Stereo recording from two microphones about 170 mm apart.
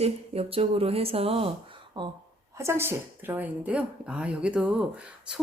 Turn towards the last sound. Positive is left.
turn(degrees=-5)  # may be behind; listen again after turning